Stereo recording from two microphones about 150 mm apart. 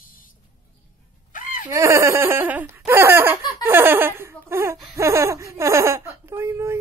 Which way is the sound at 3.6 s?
15° right (ahead or behind).